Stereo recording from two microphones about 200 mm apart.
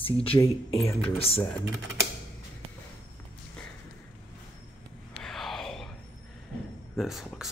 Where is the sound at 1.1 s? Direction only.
30° left (ahead or behind).